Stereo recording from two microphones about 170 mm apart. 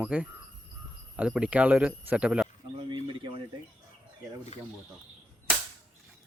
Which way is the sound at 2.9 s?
30° right (ahead or behind).